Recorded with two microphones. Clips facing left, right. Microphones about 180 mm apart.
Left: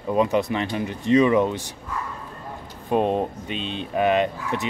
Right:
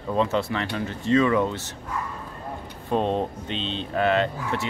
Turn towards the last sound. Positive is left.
turn(degrees=15)  # may be behind; listen again after turning